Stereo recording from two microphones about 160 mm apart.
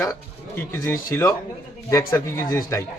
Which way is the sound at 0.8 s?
20° left (ahead or behind).